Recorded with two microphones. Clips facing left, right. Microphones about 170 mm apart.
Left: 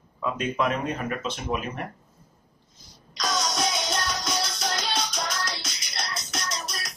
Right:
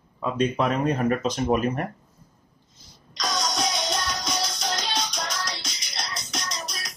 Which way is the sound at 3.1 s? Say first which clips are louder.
Even; centre (ahead or behind).